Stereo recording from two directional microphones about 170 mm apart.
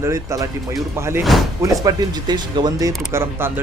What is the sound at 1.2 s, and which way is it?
Speech, centre (ahead or behind).